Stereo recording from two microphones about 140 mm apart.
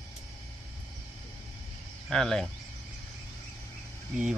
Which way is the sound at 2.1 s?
5° left (ahead or behind).